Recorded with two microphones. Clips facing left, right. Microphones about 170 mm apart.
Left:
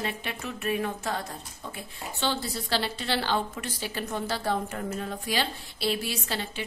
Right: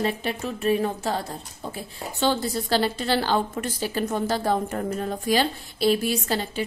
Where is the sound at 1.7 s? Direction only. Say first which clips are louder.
Right 4 dB; 45° right (ahead or behind).